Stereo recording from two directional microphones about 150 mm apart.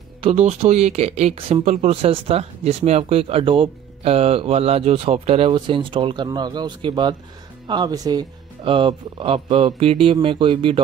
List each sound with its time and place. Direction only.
0.2 s speech: 45° right (ahead or behind)